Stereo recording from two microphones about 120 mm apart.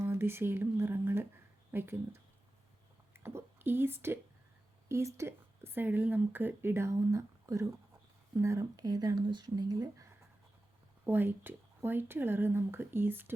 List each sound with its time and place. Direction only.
0.0 s speech: 20° right (ahead or behind)
11.0 s speech: 15° right (ahead or behind)